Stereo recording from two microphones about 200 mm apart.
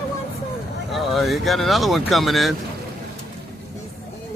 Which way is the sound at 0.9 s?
Centre (ahead or behind).